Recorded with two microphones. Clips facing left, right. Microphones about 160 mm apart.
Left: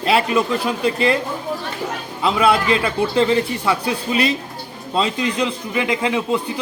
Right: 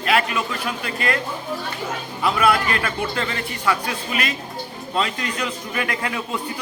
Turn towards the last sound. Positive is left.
turn(degrees=20)  # may be behind; listen again after turning